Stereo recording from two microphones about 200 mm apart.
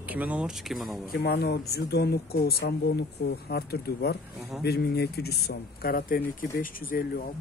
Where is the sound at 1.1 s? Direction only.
55° left (ahead or behind).